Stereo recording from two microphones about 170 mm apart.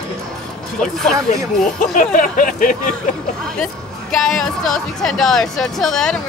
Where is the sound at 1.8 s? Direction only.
50° left (ahead or behind).